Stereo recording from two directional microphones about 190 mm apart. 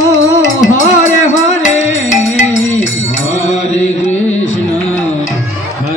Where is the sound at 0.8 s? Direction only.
40° left (ahead or behind).